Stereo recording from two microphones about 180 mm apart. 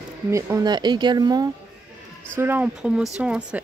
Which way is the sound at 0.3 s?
15° right (ahead or behind).